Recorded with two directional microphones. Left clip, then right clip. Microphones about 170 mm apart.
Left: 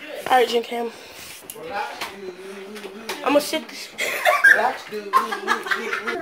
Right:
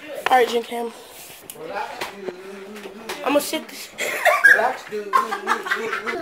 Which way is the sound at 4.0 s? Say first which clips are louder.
Right 1 dB; 25° right (ahead or behind).